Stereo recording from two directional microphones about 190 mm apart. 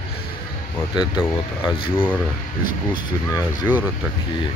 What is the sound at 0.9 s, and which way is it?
Speech, 5° right (ahead or behind).